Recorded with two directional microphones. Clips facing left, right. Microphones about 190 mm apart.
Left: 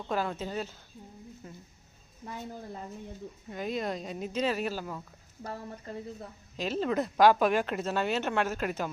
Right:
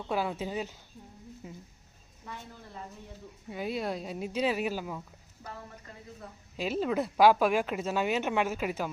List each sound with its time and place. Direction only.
0.1 s speech: 10° right (ahead or behind)
2.2 s a woman's voice: 40° left (ahead or behind)
3.5 s speech: 5° right (ahead or behind)
5.9 s a woman's voice: 30° left (ahead or behind)
6.6 s speech: 10° right (ahead or behind)